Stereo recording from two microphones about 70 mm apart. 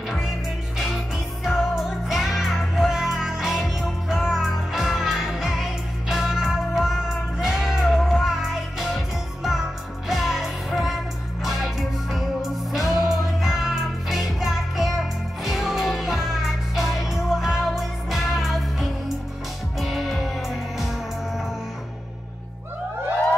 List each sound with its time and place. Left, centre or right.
0.7 s music: centre